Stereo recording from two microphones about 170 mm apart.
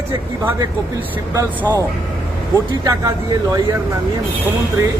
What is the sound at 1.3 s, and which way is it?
Speech, 20° right (ahead or behind).